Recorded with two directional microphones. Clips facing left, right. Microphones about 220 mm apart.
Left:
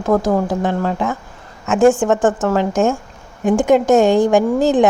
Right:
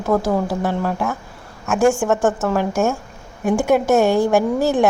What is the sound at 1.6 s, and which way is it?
A woman's voice, 20° left (ahead or behind).